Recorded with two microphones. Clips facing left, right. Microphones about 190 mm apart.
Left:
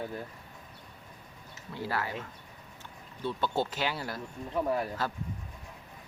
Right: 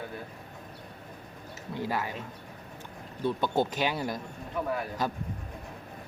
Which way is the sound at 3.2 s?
15° right (ahead or behind).